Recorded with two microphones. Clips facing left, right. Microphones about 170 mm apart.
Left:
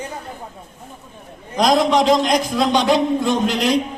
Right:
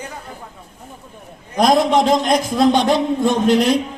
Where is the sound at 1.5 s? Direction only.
55° right (ahead or behind).